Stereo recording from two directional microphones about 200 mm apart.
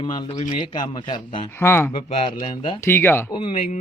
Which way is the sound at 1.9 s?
25° left (ahead or behind).